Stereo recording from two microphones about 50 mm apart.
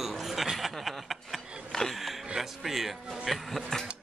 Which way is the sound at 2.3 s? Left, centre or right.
Centre.